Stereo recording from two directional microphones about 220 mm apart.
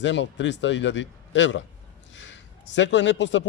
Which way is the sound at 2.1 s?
55° left (ahead or behind).